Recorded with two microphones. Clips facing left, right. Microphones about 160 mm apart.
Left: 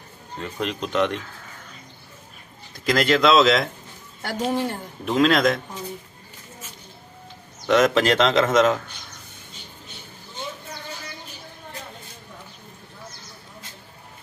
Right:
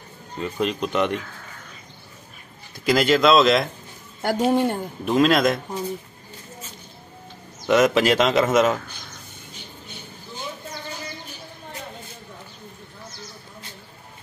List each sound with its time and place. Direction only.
0.4 s speech: 5° right (ahead or behind)
2.7 s speech: centre (ahead or behind)
4.2 s a woman's voice: 50° right (ahead or behind)
5.0 s speech: 5° right (ahead or behind)
7.6 s a man's voice: 10° right (ahead or behind)